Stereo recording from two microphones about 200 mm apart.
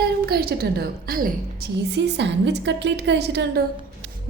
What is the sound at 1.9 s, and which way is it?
A woman's voice, 60° right (ahead or behind).